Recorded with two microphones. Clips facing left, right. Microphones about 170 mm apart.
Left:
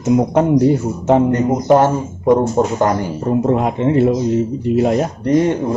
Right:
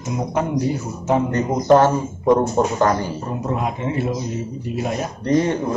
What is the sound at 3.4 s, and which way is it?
Speech, 60° left (ahead or behind).